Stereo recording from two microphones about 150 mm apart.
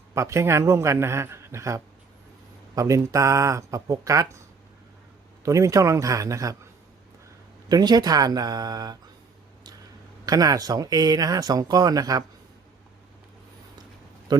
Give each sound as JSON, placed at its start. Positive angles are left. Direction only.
{"t": 0.1, "sound": "speech", "side_deg": -20}
{"t": 5.5, "sound": "speech", "side_deg": -20}
{"t": 7.7, "sound": "speech", "side_deg": -25}
{"t": 10.2, "sound": "speech", "side_deg": -25}
{"t": 14.3, "sound": "a sound", "side_deg": -25}